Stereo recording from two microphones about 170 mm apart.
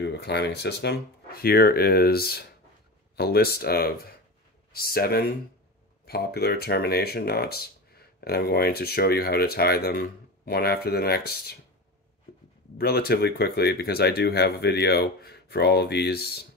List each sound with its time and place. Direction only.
0.1 s speech: 75° left (ahead or behind)
12.7 s speech: 65° left (ahead or behind)